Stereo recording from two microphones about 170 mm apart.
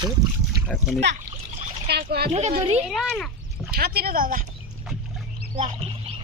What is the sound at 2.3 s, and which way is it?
Speech, 45° right (ahead or behind).